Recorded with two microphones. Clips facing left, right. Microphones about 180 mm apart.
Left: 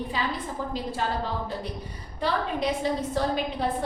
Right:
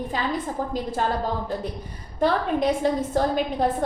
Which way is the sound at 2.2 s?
45° right (ahead or behind).